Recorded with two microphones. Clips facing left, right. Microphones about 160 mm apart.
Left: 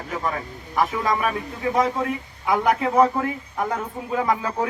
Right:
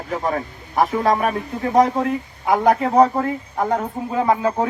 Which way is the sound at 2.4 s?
35° right (ahead or behind).